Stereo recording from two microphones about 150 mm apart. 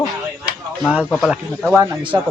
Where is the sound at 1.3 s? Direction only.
5° right (ahead or behind).